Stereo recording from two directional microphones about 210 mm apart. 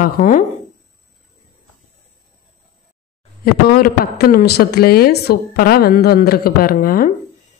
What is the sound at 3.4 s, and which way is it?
A woman's voice, 45° left (ahead or behind).